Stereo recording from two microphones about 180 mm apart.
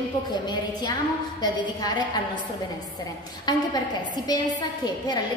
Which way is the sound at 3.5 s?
25° left (ahead or behind).